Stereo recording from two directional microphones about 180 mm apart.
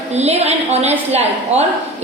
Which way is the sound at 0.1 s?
35° right (ahead or behind).